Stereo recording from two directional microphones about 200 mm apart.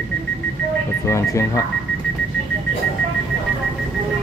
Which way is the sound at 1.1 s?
15° left (ahead or behind).